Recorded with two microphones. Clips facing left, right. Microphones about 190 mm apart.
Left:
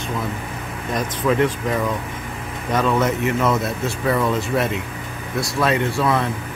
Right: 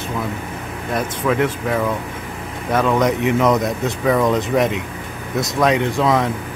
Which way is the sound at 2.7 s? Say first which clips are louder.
Right 2 dB; 10° right (ahead or behind).